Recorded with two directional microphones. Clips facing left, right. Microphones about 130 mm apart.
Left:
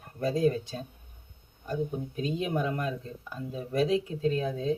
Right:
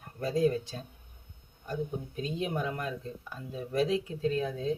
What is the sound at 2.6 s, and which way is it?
Speech, 25° left (ahead or behind).